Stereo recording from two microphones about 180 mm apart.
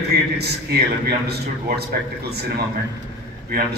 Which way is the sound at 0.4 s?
60° right (ahead or behind).